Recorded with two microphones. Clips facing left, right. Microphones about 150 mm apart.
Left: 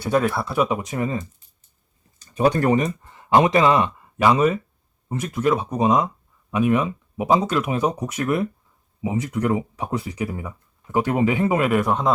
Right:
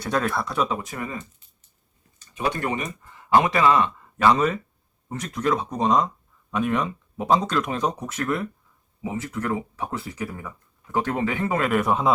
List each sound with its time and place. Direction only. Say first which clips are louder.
0.0 s speech: left 4 dB; 5° left (ahead or behind); by 1.2 s 25° left (ahead or behind)
2.3 s speech: left 8 dB; 40° left (ahead or behind); by 12.1 s centre (ahead or behind)